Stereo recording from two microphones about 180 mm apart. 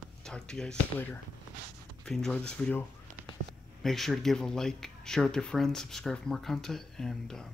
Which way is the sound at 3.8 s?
Centre (ahead or behind).